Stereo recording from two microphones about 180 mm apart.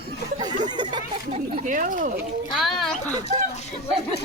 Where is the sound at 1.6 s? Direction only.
45° right (ahead or behind).